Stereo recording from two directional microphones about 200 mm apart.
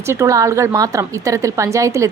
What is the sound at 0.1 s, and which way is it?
A woman's voice, 15° right (ahead or behind).